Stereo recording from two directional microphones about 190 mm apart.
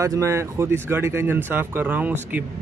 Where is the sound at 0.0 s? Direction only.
15° right (ahead or behind).